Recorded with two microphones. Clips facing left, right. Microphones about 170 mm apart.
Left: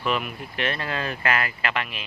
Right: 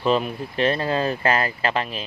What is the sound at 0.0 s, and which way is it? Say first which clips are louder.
Speech: right 6 dB; 30° right (ahead or behind).